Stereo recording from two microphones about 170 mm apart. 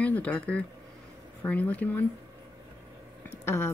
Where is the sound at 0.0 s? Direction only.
10° left (ahead or behind).